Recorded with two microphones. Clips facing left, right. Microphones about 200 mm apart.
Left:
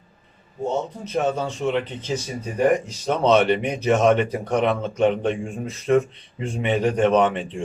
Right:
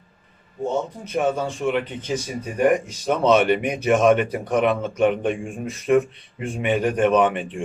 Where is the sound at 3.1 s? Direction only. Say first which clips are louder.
Even; 10° right (ahead or behind).